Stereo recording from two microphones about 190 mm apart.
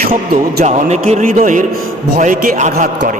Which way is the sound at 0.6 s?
35° right (ahead or behind).